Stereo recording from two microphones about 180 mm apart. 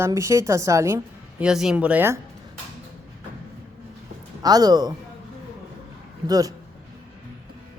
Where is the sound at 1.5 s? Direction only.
5° right (ahead or behind).